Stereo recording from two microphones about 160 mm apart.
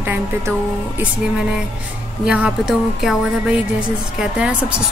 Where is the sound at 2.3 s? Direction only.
5° right (ahead or behind).